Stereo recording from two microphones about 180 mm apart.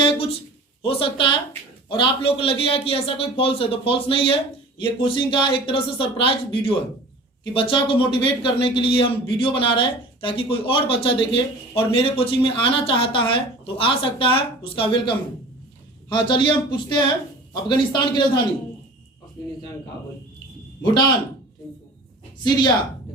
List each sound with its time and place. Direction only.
0.0 s a sound: 30° left (ahead or behind)
0.8 s a man's voice: 30° left (ahead or behind)
20.8 s a man's voice: 25° left (ahead or behind)